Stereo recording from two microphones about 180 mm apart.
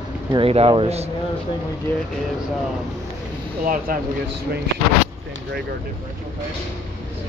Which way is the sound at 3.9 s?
55° right (ahead or behind).